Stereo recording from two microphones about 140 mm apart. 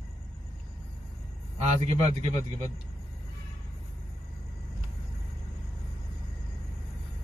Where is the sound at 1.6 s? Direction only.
55° right (ahead or behind).